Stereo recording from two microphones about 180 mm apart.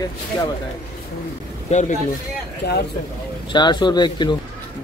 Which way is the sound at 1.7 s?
40° left (ahead or behind).